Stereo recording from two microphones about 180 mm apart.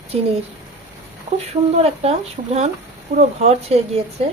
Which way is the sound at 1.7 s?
35° right (ahead or behind).